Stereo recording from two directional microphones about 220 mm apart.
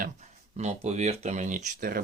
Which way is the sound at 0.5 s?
30° right (ahead or behind).